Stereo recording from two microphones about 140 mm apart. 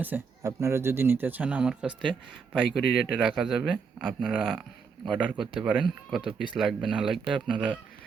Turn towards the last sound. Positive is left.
turn(degrees=-5)  # may be behind; listen again after turning